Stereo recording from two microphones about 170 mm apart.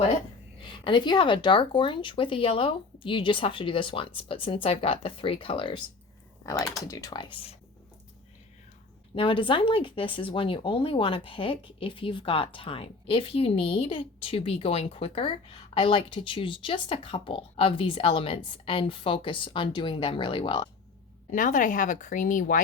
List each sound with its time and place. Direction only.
0.6 s speech: 30° left (ahead or behind)
6.4 s speech: 20° left (ahead or behind)
9.1 s speech: 30° left (ahead or behind)
21.3 s speech: 50° left (ahead or behind)